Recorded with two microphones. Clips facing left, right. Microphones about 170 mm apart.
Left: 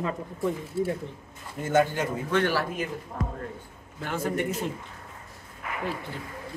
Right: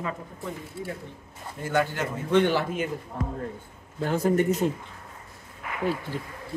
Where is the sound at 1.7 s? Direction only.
15° left (ahead or behind).